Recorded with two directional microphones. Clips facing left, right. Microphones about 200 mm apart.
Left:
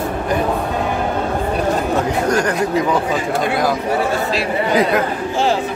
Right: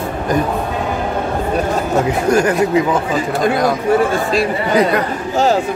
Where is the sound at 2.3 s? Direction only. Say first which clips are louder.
Right 6 dB; 10° right (ahead or behind).